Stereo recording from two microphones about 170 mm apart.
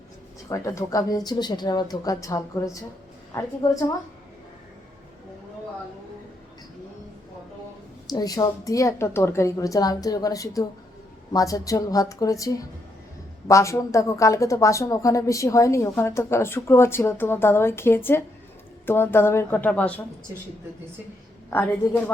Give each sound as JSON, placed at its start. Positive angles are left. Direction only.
{"t": 0.4, "sound": "a woman's voice", "side_deg": 20}
{"t": 8.0, "sound": "a woman's voice", "side_deg": 20}
{"t": 21.5, "sound": "speech", "side_deg": 10}